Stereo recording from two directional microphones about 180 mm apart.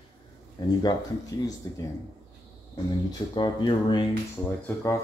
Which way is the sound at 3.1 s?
25° left (ahead or behind).